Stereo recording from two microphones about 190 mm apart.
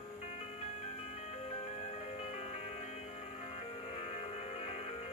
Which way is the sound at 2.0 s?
35° left (ahead or behind).